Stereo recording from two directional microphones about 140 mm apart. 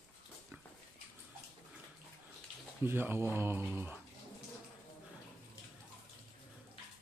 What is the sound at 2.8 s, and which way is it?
Speech, 15° right (ahead or behind).